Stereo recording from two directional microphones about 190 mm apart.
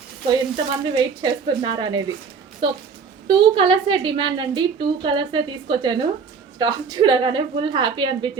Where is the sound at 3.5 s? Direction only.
25° right (ahead or behind).